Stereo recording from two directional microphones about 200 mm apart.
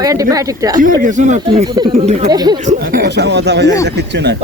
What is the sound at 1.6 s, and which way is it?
Speech, 20° right (ahead or behind).